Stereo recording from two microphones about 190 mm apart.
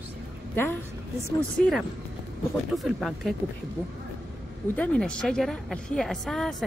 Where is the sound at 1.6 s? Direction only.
Centre (ahead or behind).